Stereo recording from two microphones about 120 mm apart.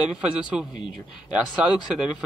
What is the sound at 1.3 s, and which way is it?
Speech, 10° right (ahead or behind).